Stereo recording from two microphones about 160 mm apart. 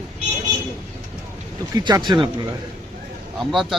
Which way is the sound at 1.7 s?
25° right (ahead or behind).